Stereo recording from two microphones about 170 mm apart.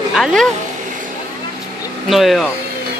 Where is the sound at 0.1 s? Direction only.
Centre (ahead or behind).